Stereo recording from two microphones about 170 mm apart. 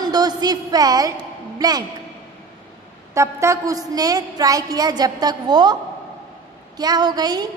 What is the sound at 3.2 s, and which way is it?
A woman's voice, 15° right (ahead or behind).